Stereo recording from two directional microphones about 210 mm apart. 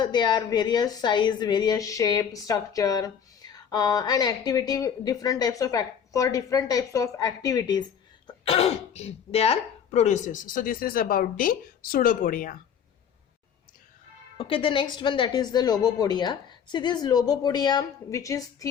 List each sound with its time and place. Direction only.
0.0 s a woman's voice: 20° left (ahead or behind)
8.3 s speech: 30° left (ahead or behind)
14.3 s speech: 25° left (ahead or behind)